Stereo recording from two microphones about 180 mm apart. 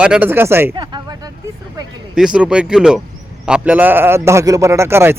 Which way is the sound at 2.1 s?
5° right (ahead or behind).